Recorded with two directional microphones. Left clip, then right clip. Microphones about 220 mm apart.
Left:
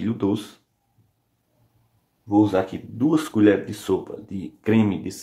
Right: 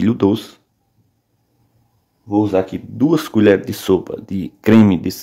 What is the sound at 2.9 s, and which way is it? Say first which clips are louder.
Speech: right 5 dB; 40° right (ahead or behind).